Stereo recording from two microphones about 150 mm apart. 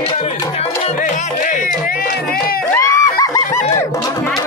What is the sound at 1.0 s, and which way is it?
Music, 60° left (ahead or behind).